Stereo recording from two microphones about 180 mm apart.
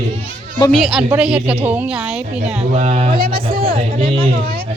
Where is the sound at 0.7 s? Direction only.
Centre (ahead or behind).